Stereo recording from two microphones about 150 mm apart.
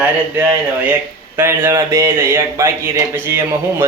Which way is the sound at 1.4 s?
15° right (ahead or behind).